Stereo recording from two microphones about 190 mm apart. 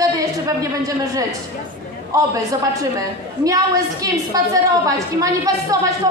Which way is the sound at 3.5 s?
20° right (ahead or behind).